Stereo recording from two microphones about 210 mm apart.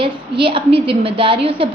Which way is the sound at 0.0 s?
25° right (ahead or behind).